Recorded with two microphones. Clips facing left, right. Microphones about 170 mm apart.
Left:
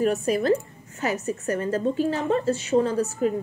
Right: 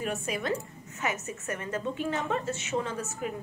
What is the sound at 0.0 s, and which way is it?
A woman's voice, 35° left (ahead or behind).